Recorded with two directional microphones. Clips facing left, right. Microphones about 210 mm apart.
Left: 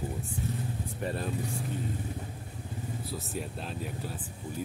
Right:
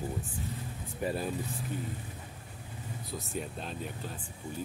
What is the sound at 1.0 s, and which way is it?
Speech, 5° right (ahead or behind).